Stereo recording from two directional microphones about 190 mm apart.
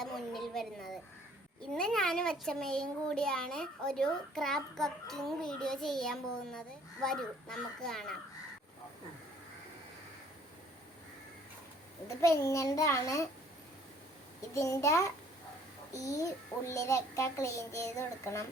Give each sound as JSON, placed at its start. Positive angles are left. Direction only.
{"t": 0.0, "sound": "a sound", "side_deg": 0}
{"t": 1.7, "sound": "a child's voice", "side_deg": 5}
{"t": 12.0, "sound": "a child's voice", "side_deg": 15}
{"t": 14.5, "sound": "a child's voice", "side_deg": 15}